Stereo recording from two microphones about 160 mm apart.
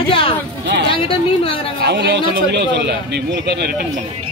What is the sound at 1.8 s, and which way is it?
Speech, 90° right.